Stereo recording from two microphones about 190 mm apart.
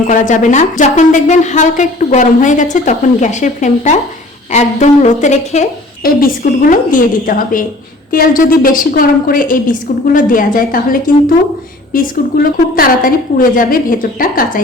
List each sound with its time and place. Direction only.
0.1 s a woman's voice: 40° left (ahead or behind)
6.0 s a woman's voice: 50° left (ahead or behind)